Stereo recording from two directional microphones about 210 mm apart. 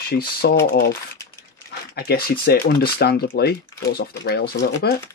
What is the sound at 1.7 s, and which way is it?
Speech, 50° left (ahead or behind).